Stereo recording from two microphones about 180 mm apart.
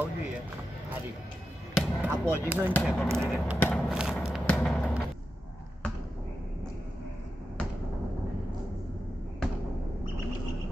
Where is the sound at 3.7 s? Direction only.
Centre (ahead or behind).